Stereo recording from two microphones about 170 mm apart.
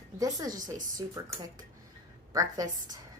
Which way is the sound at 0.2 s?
20° right (ahead or behind).